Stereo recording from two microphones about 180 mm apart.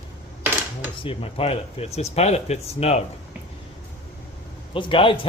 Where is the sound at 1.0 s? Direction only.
30° left (ahead or behind).